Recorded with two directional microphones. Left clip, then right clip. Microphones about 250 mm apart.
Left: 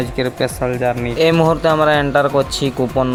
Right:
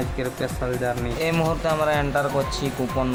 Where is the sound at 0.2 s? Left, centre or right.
Left.